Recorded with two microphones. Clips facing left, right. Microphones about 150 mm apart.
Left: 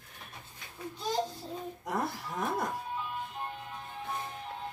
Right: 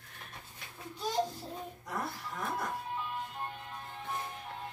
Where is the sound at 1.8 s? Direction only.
90° left.